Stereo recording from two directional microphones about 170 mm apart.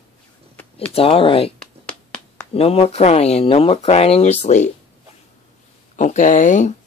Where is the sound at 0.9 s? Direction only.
35° left (ahead or behind).